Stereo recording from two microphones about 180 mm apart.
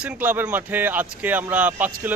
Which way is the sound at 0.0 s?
10° right (ahead or behind).